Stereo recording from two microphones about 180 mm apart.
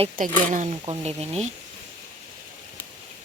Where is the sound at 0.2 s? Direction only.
45° right (ahead or behind).